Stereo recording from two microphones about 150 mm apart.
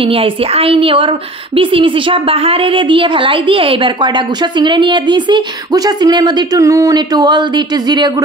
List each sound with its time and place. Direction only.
0.0 s a woman's voice: 40° right (ahead or behind)